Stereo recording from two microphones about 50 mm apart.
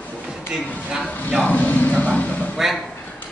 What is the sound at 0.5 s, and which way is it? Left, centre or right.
Speech, centre.